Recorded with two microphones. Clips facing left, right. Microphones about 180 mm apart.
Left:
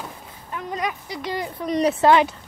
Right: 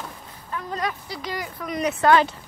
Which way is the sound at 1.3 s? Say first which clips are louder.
Left 5 dB; 30° left (ahead or behind).